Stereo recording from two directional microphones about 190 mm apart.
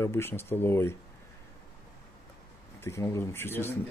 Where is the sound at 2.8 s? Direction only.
15° left (ahead or behind).